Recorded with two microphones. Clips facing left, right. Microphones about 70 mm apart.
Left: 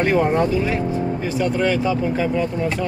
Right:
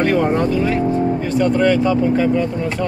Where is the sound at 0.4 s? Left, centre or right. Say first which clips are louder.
Right 2 dB; centre.